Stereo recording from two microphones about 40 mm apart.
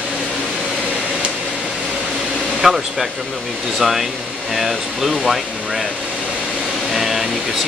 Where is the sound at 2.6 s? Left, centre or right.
Centre.